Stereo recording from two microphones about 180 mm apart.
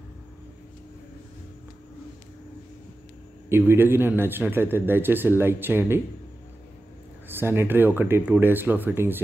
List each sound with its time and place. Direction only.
3.4 s a man's voice: 15° right (ahead or behind)
7.2 s a man's voice: 10° right (ahead or behind)